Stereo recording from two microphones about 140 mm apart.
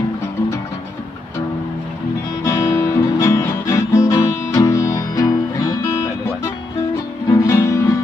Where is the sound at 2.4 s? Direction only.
25° left (ahead or behind).